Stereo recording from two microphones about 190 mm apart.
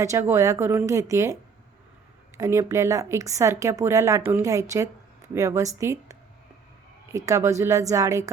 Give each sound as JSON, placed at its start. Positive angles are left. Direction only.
{"t": 0.0, "sound": "a woman's voice", "side_deg": -15}
{"t": 2.4, "sound": "a woman's voice", "side_deg": -15}